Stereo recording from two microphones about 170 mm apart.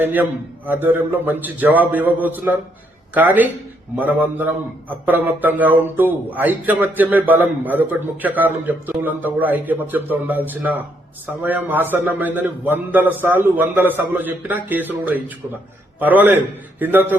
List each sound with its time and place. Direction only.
0.0 s a man's voice: 10° right (ahead or behind)